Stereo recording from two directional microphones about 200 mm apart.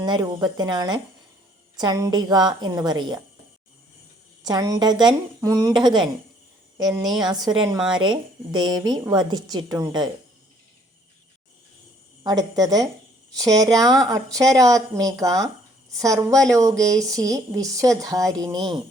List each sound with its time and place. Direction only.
0.0 s a woman's voice: 20° right (ahead or behind)
4.4 s a woman's voice: 20° right (ahead or behind)
12.2 s a woman's voice: 20° right (ahead or behind)